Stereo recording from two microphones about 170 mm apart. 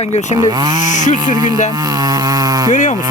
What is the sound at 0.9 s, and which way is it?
Speech, 45° left (ahead or behind).